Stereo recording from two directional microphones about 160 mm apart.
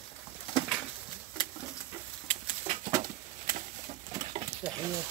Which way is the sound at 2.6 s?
45° right (ahead or behind).